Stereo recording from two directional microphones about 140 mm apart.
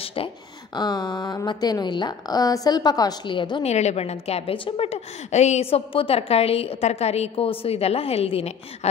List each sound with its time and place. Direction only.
0.0 s a sound: 40° left (ahead or behind)
0.7 s a woman's voice: 30° left (ahead or behind)
3.6 s a woman's voice: 50° left (ahead or behind)